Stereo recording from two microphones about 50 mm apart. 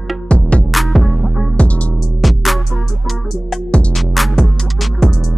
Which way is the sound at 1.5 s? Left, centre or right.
Left.